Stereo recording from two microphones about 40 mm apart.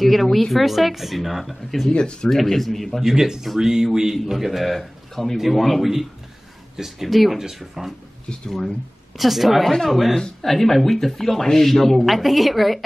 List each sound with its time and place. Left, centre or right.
0.0 s speech: centre
1.9 s speech: left
2.2 s speech: centre
3.0 s a man's voice: centre
9.1 s speech: centre